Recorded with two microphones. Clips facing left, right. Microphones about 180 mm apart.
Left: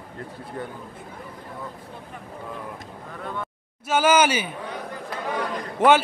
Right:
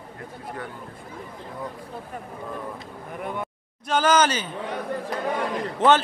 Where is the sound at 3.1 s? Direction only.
15° right (ahead or behind).